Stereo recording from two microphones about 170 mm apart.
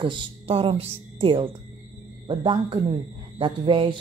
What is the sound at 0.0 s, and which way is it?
Speech, 30° right (ahead or behind).